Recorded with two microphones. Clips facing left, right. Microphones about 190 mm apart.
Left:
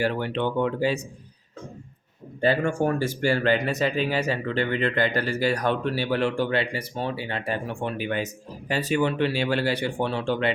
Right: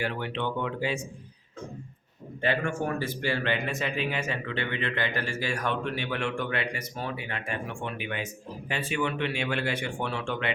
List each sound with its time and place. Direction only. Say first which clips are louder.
0.0 s speech: left 6 dB; 40° left (ahead or behind)
2.4 s speech: left 6 dB; 40° left (ahead or behind)